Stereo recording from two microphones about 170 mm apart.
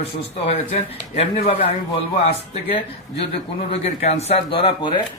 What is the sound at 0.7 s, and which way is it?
A man's voice, 35° left (ahead or behind).